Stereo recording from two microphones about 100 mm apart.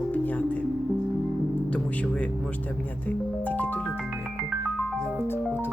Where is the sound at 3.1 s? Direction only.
15° left (ahead or behind).